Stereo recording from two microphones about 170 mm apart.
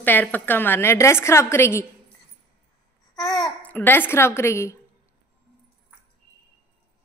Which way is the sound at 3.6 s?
10° left (ahead or behind).